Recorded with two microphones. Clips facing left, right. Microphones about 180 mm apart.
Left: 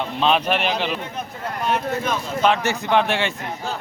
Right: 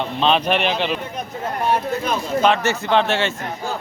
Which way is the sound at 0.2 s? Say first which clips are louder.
Right 1 dB; 10° left (ahead or behind).